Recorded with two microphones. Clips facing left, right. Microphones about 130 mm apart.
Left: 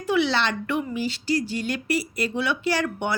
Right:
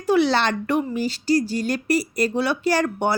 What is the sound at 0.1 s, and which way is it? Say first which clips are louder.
A woman's voice: right 4 dB; 40° right (ahead or behind).